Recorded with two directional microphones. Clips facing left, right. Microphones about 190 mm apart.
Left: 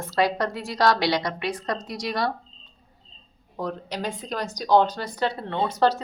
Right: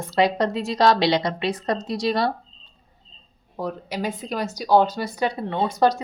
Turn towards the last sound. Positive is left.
turn(degrees=-10)  # may be behind; listen again after turning